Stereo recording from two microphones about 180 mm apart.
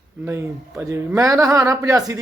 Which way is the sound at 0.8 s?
15° right (ahead or behind).